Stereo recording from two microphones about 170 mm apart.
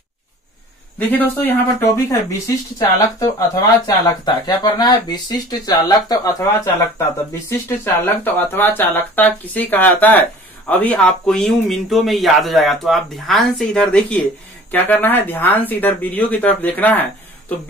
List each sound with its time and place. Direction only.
0.9 s speech: 10° left (ahead or behind)